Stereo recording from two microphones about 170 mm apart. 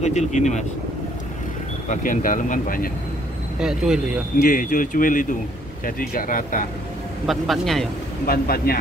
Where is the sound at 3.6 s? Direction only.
5° right (ahead or behind).